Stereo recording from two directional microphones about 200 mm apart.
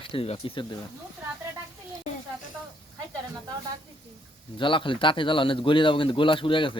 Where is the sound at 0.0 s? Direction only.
25° left (ahead or behind).